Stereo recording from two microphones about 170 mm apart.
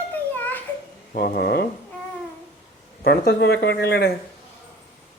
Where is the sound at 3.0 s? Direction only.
75° left (ahead or behind).